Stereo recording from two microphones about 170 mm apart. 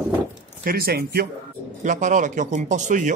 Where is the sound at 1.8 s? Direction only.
45° right (ahead or behind).